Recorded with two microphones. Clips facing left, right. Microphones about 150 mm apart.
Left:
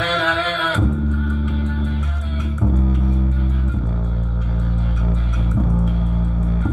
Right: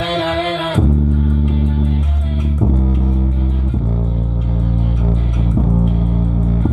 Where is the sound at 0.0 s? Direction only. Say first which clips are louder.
Right 4 dB; 25° right (ahead or behind).